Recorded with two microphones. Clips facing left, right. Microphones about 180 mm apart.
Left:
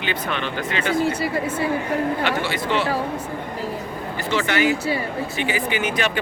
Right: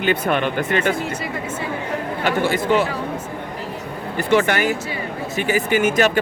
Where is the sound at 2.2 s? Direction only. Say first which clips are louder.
Right 4 dB; 45° right (ahead or behind).